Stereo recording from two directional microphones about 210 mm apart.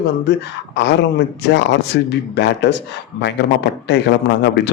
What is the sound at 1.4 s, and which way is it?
Speech, 55° left (ahead or behind).